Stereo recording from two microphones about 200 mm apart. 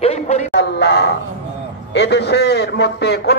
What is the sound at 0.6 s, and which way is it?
A man's voice, 55° left (ahead or behind).